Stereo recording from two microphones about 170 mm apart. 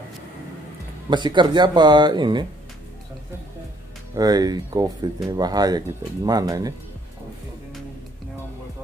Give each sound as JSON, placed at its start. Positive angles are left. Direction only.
{"t": 1.1, "sound": "speech", "side_deg": -25}
{"t": 4.1, "sound": "speech", "side_deg": -20}